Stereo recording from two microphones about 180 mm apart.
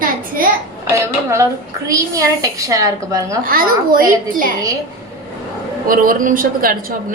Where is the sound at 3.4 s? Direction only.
55° right (ahead or behind).